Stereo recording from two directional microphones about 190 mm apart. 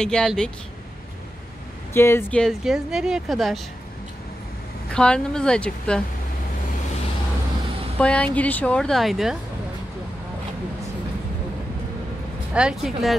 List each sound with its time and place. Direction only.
0.0 s speech: 5° left (ahead or behind)
2.0 s speech: 10° left (ahead or behind)
4.9 s speech: 5° left (ahead or behind)
8.0 s speech: 5° left (ahead or behind)
12.5 s speech: 5° right (ahead or behind)